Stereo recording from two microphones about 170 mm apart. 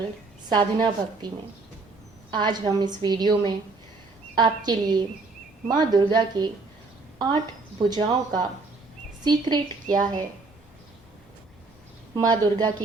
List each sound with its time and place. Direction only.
0.5 s a woman's voice: 25° right (ahead or behind)
2.3 s a woman's voice: 25° right (ahead or behind)
7.8 s a woman's voice: 25° right (ahead or behind)
9.8 s a woman's voice: 50° right (ahead or behind)
12.1 s a woman's voice: 25° right (ahead or behind)